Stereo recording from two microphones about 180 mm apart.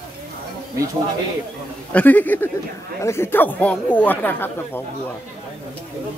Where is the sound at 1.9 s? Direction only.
10° left (ahead or behind).